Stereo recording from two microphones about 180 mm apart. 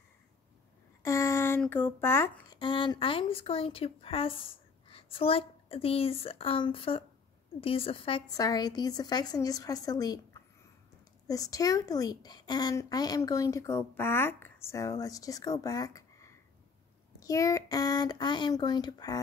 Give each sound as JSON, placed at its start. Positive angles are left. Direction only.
{"t": 1.0, "sound": "a sound", "side_deg": 15}
{"t": 2.6, "sound": "speech", "side_deg": 25}
{"t": 8.4, "sound": "a woman's voice", "side_deg": 20}
{"t": 11.2, "sound": "a woman's voice", "side_deg": 20}